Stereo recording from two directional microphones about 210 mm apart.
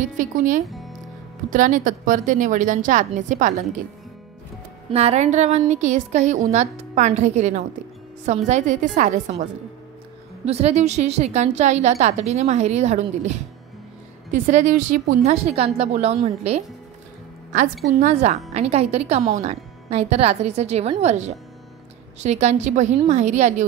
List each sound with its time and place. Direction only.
0.0 s a woman's voice: 40° right (ahead or behind)
4.9 s a woman's voice: 30° right (ahead or behind)
14.3 s a woman's voice: 35° right (ahead or behind)
18.0 s a woman's voice: 35° right (ahead or behind)